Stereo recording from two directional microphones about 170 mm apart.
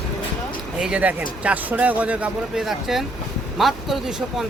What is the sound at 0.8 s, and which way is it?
Speech, 5° right (ahead or behind).